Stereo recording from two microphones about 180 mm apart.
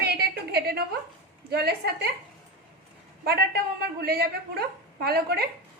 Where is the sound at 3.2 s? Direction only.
60° right (ahead or behind).